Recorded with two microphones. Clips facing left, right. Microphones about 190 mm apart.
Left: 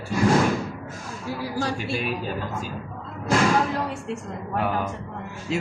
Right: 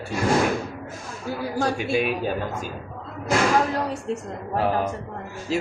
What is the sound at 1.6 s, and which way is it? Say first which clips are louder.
Speech: right 6 dB; 50° right (ahead or behind).